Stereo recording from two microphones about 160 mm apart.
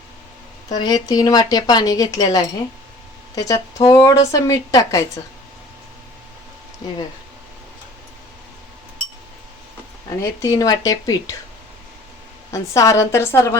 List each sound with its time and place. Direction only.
0.7 s speech: 25° left (ahead or behind)
10.2 s speech: 20° left (ahead or behind)
12.5 s speech: 20° left (ahead or behind)